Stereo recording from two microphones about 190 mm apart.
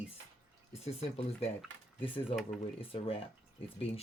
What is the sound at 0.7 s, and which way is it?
Speech, 30° left (ahead or behind).